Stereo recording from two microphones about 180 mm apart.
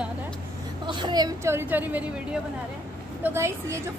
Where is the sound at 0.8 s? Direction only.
25° right (ahead or behind).